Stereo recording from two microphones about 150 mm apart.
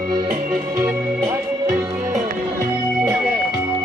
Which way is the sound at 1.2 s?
20° right (ahead or behind).